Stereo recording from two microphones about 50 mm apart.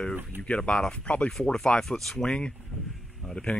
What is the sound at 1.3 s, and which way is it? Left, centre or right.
Speech, centre.